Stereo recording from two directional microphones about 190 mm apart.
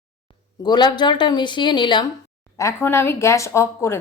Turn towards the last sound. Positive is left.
turn(degrees=15)  # may be behind; listen again after turning